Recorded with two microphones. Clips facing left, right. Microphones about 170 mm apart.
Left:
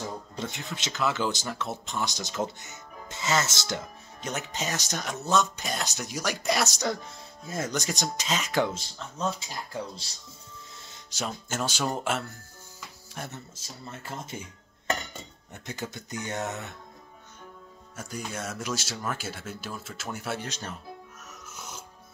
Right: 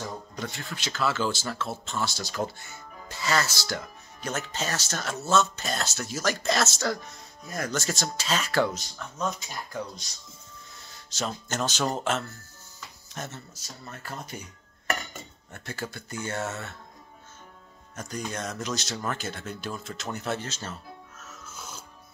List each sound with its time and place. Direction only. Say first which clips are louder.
0.4 s speech: left 1 dB; 20° left (ahead or behind)
11.1 s speech: right 2 dB; 10° left (ahead or behind)
13.6 s speech: left 1 dB; 25° left (ahead or behind)
15.5 s speech: even; 20° left (ahead or behind)
17.9 s speech: right 2 dB; 5° left (ahead or behind)
21.2 s music: even; 15° left (ahead or behind)